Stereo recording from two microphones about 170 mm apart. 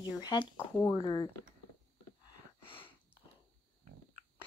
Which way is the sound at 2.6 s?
30° left (ahead or behind).